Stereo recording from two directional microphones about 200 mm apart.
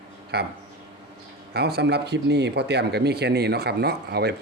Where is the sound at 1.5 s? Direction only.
50° right (ahead or behind).